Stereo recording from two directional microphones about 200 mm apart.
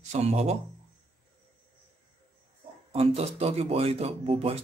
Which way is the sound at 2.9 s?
30° right (ahead or behind).